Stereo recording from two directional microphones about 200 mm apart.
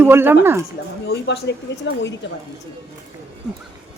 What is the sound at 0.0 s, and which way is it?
Speech, 10° right (ahead or behind).